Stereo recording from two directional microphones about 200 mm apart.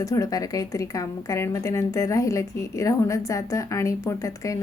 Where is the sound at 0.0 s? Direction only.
15° left (ahead or behind).